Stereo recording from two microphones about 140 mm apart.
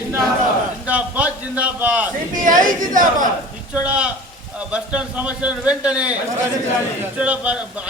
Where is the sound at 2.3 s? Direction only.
70° right (ahead or behind).